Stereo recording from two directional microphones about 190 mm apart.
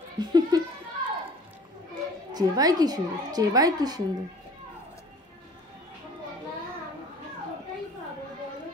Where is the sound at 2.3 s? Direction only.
20° right (ahead or behind).